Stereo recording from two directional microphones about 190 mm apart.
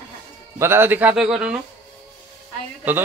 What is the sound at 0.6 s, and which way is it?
Speech, 10° right (ahead or behind).